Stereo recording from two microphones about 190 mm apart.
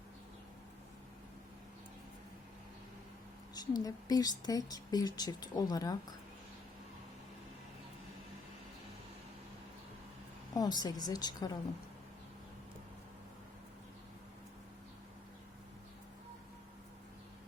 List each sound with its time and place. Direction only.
3.5 s a woman's voice: 20° left (ahead or behind)
10.5 s a woman's voice: 20° left (ahead or behind)